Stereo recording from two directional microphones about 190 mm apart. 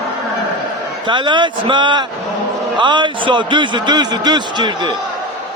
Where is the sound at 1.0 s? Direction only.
25° right (ahead or behind).